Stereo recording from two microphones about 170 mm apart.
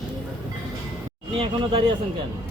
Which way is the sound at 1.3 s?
30° right (ahead or behind).